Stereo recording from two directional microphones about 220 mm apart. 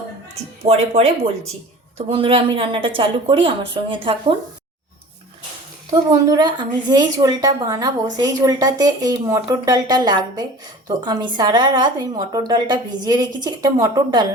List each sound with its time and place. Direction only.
0.6 s speech: 30° right (ahead or behind)
5.9 s a woman's voice: 15° right (ahead or behind)